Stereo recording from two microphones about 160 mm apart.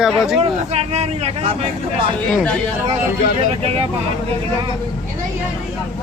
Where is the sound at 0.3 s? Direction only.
40° right (ahead or behind).